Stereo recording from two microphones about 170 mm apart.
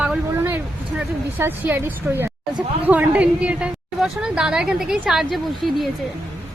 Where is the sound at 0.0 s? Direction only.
10° right (ahead or behind).